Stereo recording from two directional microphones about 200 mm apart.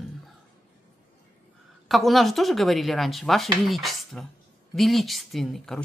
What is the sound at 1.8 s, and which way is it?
Speech, centre (ahead or behind).